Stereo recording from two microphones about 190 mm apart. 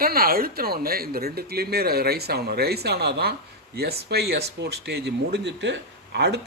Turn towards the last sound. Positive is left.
turn(degrees=-60)  # may be behind; listen again after turning